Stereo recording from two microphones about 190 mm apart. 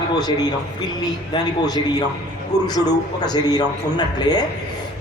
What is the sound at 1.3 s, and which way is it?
A man's voice, 20° left (ahead or behind).